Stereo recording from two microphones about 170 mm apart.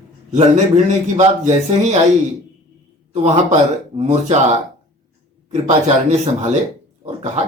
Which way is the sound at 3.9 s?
35° right (ahead or behind).